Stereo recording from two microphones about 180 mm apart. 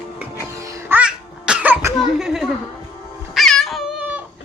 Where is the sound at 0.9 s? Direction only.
5° right (ahead or behind).